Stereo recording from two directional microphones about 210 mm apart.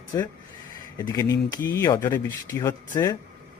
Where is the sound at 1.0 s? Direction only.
15° left (ahead or behind).